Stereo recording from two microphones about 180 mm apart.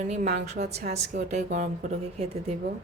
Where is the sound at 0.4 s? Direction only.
40° right (ahead or behind).